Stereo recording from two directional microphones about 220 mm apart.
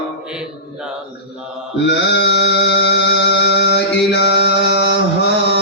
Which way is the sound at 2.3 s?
50° left (ahead or behind).